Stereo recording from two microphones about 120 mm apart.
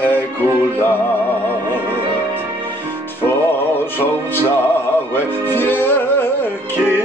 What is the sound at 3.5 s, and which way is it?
Music, 15° left (ahead or behind).